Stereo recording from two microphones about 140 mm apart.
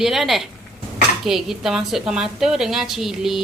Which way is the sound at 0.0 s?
Centre (ahead or behind).